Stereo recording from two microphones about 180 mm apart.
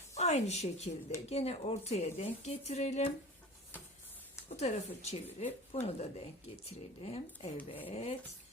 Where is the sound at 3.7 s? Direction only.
10° left (ahead or behind).